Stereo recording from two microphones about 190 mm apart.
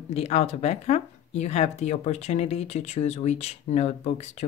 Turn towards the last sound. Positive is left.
turn(degrees=35)  # may be behind; listen again after turning